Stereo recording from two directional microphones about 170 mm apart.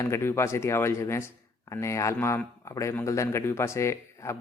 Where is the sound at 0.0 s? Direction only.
15° left (ahead or behind).